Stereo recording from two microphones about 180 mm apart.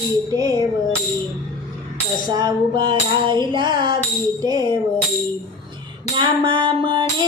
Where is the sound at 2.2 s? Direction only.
25° right (ahead or behind).